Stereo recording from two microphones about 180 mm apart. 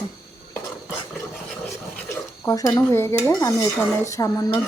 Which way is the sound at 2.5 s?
20° left (ahead or behind).